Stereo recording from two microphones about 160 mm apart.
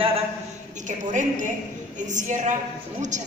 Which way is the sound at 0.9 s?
50° right (ahead or behind).